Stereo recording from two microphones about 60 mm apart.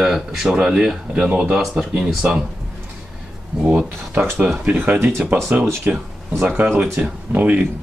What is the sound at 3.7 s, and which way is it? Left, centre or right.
Speech, right.